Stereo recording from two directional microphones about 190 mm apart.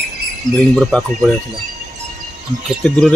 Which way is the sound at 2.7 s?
5° left (ahead or behind).